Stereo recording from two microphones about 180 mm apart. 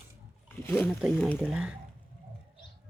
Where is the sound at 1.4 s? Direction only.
5° right (ahead or behind).